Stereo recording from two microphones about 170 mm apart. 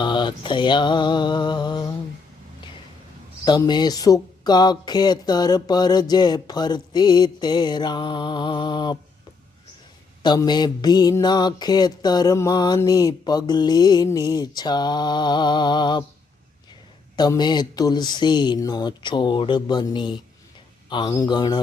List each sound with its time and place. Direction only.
0.0 s mantra: 25° left (ahead or behind)
3.4 s mantra: 25° left (ahead or behind)
10.2 s mantra: 25° left (ahead or behind)
17.2 s mantra: 25° left (ahead or behind)